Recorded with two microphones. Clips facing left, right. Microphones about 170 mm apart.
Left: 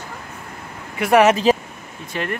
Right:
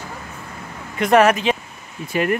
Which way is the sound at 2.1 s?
10° right (ahead or behind).